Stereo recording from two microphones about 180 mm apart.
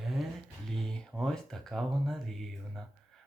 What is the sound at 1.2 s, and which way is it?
Speech, centre (ahead or behind).